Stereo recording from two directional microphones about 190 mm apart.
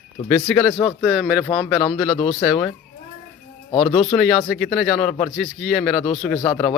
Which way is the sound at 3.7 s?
25° left (ahead or behind).